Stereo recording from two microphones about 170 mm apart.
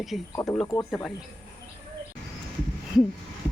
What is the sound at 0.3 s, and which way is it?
Speech, 20° left (ahead or behind).